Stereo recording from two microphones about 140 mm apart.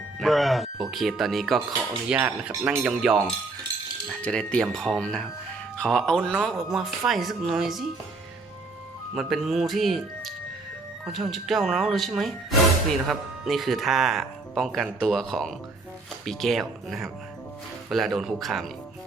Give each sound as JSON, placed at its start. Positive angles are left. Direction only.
{"t": 0.2, "sound": "speech", "side_deg": 0}
{"t": 4.2, "sound": "speech", "side_deg": 5}
{"t": 9.1, "sound": "speech", "side_deg": 0}